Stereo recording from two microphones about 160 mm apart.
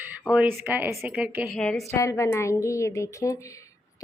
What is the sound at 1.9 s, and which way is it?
A woman's voice, 20° left (ahead or behind).